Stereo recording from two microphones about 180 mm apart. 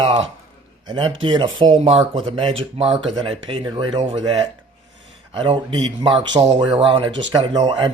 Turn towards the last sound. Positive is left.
turn(degrees=-25)  # may be behind; listen again after turning